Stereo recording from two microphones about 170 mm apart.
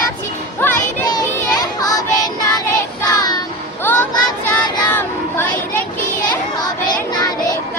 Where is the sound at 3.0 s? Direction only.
25° left (ahead or behind).